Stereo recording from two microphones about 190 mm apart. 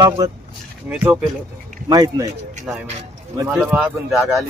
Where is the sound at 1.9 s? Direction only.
20° right (ahead or behind).